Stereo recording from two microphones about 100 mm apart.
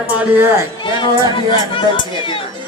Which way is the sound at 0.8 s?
55° left (ahead or behind).